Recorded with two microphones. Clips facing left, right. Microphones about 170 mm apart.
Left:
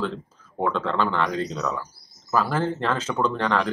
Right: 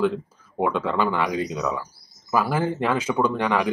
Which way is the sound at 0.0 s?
10° right (ahead or behind).